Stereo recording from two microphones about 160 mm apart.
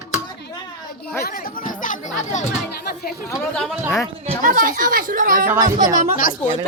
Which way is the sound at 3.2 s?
20° left (ahead or behind).